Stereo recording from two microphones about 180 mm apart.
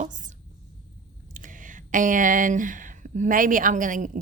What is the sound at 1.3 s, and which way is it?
Speech, 45° right (ahead or behind).